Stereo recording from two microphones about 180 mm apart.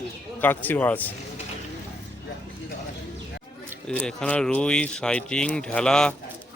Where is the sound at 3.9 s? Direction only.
5° left (ahead or behind).